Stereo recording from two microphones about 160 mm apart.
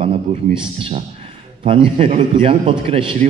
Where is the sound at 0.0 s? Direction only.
35° right (ahead or behind).